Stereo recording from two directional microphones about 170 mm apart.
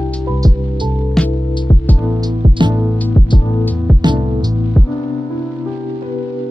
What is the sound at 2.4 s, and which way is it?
Music, 30° right (ahead or behind).